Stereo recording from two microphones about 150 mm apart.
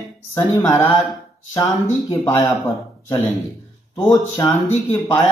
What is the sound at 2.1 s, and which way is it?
Speech, 20° left (ahead or behind).